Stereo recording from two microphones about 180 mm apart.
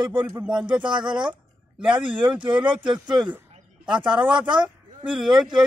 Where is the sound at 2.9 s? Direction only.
Centre (ahead or behind).